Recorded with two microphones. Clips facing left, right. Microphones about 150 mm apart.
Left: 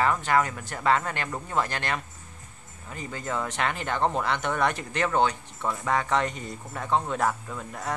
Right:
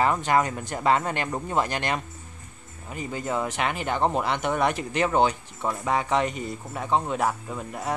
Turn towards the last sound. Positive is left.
turn(degrees=-15)  # may be behind; listen again after turning